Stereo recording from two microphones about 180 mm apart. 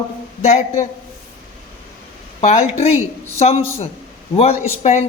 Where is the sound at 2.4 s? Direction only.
35° left (ahead or behind).